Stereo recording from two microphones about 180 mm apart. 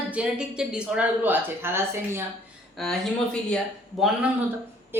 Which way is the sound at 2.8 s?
5° left (ahead or behind).